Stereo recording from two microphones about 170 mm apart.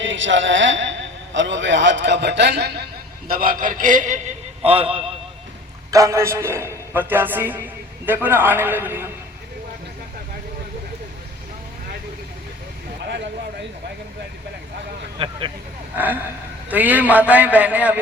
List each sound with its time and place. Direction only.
0.0 s a man's voice: 90° right
3.2 s a man's voice: 55° right (ahead or behind)
4.6 s a man's voice: 35° right (ahead or behind)
5.9 s a man's voice: 20° right (ahead or behind)
13.1 s a sound: 90° right
15.2 s vehicle: 30° right (ahead or behind)
15.9 s a man's voice: 10° right (ahead or behind)